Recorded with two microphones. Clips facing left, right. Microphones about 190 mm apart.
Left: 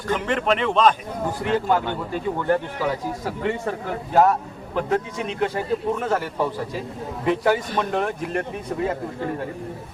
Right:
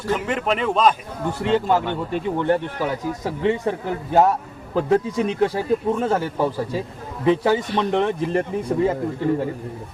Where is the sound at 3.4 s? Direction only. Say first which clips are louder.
Right 5 dB; 20° right (ahead or behind).